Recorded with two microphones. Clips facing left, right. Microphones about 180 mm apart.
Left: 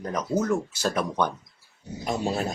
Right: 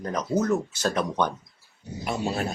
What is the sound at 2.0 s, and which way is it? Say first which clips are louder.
Speech: left 1 dB; 40° left (ahead or behind).